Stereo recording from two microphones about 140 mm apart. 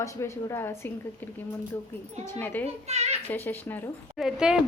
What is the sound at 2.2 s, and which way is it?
Speech, 15° left (ahead or behind).